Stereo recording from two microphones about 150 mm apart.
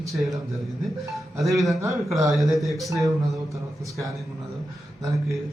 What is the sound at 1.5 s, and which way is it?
Speech, centre (ahead or behind).